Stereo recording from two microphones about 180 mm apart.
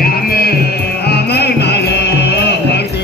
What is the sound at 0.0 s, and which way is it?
Music, 60° left (ahead or behind).